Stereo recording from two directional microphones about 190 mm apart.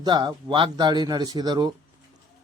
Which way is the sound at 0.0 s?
20° right (ahead or behind).